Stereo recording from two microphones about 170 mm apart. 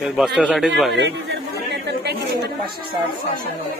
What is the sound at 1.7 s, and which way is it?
Speech, 70° right (ahead or behind).